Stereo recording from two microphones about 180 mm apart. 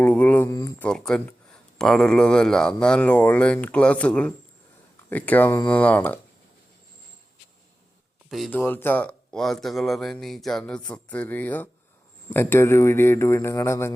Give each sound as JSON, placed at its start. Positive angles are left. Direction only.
{"t": 0.0, "sound": "speech", "side_deg": 10}
{"t": 0.9, "sound": "speech", "side_deg": 5}
{"t": 8.3, "sound": "speech", "side_deg": 0}
{"t": 8.5, "sound": "speech", "side_deg": 10}